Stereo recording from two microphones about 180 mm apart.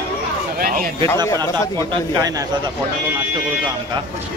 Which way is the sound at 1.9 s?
20° right (ahead or behind).